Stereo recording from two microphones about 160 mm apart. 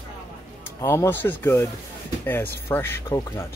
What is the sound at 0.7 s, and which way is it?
Speech, 15° left (ahead or behind).